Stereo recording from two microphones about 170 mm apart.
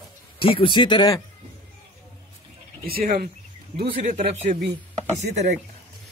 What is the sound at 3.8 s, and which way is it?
Speech, 50° right (ahead or behind).